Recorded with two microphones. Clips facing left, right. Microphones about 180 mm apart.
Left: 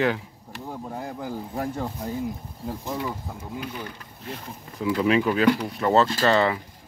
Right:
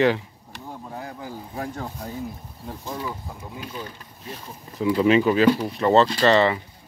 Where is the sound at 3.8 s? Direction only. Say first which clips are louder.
Even; 20° right (ahead or behind).